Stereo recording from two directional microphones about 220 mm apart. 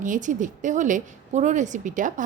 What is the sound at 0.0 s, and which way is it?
Speech, 35° right (ahead or behind).